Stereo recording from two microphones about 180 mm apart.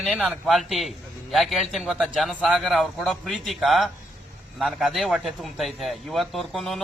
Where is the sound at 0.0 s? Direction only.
Centre (ahead or behind).